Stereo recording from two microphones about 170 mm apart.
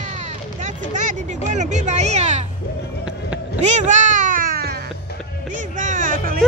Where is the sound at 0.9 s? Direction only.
45° right (ahead or behind).